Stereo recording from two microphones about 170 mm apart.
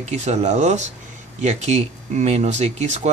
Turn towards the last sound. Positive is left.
turn(degrees=-40)  # may be behind; listen again after turning